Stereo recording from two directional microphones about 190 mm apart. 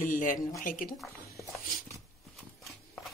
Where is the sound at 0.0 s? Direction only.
45° left (ahead or behind).